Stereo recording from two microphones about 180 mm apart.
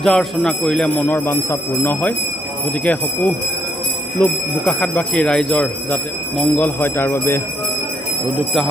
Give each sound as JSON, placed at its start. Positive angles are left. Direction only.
{"t": 0.0, "sound": "speech", "side_deg": 0}